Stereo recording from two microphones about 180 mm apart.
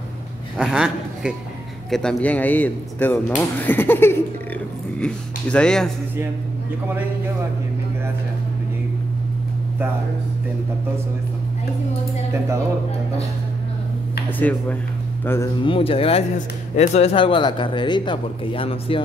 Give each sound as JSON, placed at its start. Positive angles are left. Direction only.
{"t": 0.6, "sound": "speech", "side_deg": -5}
{"t": 15.2, "sound": "speech", "side_deg": 15}
{"t": 15.6, "sound": "speech", "side_deg": 30}